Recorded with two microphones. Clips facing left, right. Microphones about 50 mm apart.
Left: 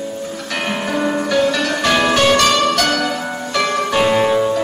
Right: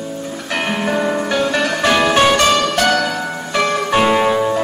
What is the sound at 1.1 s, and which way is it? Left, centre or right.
Music, centre.